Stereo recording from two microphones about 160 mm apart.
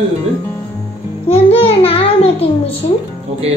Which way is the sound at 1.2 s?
40° left (ahead or behind).